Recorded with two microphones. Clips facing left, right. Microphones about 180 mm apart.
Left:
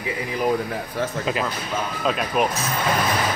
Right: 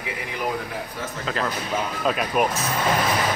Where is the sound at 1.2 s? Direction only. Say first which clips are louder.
Right 2 dB; 10° left (ahead or behind).